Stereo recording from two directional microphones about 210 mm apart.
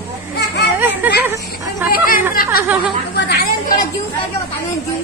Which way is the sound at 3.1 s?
50° left (ahead or behind).